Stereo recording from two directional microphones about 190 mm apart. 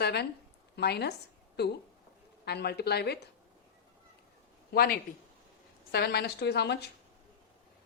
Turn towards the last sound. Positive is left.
turn(degrees=60)  # may be behind; listen again after turning